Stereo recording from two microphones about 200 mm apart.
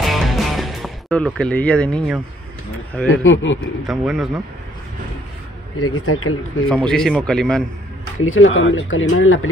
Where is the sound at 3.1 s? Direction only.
80° left.